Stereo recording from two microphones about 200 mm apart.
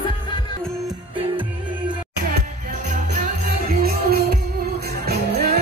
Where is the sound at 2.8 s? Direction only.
40° right (ahead or behind).